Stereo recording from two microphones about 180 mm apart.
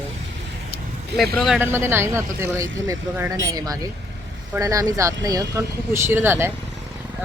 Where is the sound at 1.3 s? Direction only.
Centre (ahead or behind).